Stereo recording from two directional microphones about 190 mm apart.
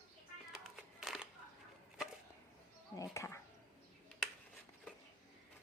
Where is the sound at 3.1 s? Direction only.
15° left (ahead or behind).